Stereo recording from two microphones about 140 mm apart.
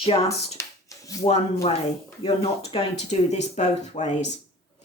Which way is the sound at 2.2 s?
40° left (ahead or behind).